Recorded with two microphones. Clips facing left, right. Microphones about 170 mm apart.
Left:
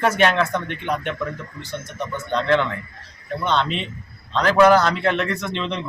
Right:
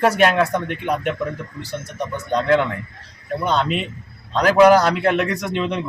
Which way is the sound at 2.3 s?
10° right (ahead or behind).